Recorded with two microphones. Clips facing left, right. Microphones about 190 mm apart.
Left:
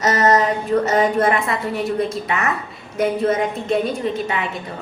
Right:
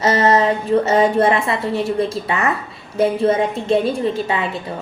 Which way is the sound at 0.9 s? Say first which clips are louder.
Right 3 dB; 30° right (ahead or behind).